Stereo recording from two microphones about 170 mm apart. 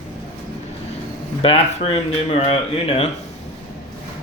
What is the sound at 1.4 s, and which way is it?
Speech, 35° left (ahead or behind).